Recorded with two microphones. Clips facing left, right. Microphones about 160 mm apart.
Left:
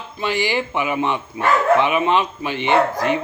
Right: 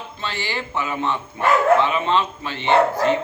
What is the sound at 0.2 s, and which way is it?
Speech, 15° left (ahead or behind).